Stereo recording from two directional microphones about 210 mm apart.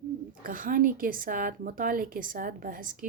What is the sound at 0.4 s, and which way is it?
A woman's voice, 40° right (ahead or behind).